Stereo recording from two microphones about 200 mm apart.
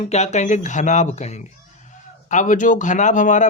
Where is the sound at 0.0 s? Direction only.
35° left (ahead or behind).